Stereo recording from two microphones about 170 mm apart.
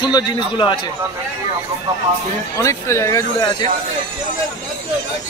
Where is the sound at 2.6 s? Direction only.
15° left (ahead or behind).